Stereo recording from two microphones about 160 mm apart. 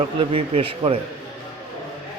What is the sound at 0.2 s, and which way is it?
Speech, 35° right (ahead or behind).